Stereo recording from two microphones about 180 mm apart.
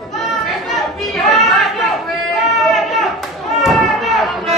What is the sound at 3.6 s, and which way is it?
Children playing, centre (ahead or behind).